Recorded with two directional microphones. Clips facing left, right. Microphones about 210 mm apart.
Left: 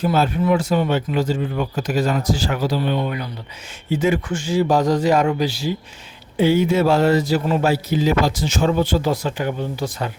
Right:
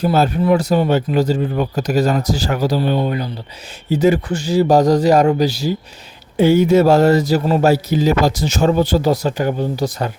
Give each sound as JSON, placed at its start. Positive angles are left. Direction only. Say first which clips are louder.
{"t": 0.0, "sound": "speech", "louder": "right 3 dB", "side_deg": -40}